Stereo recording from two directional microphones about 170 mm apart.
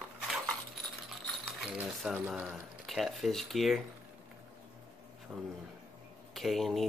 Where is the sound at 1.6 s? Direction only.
Centre (ahead or behind).